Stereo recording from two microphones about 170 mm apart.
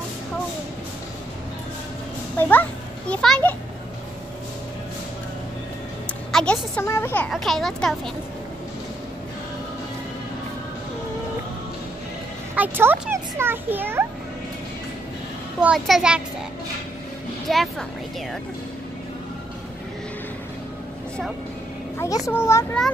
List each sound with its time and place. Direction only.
2.3 s a child's voice: 10° left (ahead or behind)
6.3 s a sound: 5° left (ahead or behind)
7.2 s speech: centre (ahead or behind)
12.5 s a child's voice: 10° right (ahead or behind)
15.6 s speech: 5° right (ahead or behind)
17.5 s speech: centre (ahead or behind)
21.9 s a child's voice: 20° left (ahead or behind)